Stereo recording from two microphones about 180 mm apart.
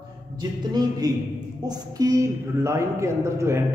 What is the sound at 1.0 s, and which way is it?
A man's voice, 20° right (ahead or behind).